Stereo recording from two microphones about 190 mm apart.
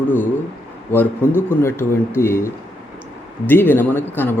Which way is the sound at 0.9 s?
10° left (ahead or behind).